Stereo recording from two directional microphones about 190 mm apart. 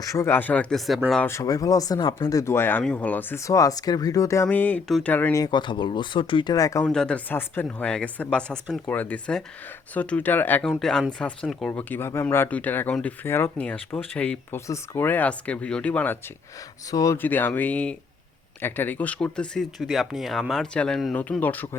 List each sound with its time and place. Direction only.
0.1 s speech: 15° left (ahead or behind)
6.8 s speech: 5° left (ahead or behind)